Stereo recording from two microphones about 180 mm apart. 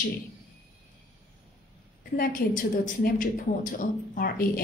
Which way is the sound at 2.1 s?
50° left (ahead or behind).